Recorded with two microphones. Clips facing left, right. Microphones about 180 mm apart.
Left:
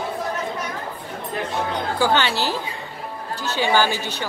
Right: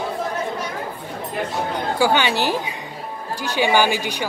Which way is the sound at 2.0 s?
15° right (ahead or behind).